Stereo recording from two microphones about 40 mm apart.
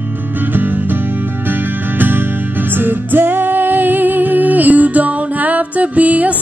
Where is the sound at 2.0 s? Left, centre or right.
Right.